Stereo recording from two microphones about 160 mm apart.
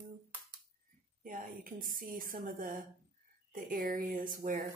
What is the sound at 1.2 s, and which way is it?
A woman's voice, 60° right (ahead or behind).